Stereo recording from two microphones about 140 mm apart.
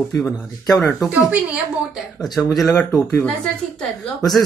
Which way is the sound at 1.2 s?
10° right (ahead or behind).